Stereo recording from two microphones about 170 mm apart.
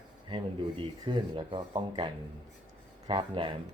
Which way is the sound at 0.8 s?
25° right (ahead or behind).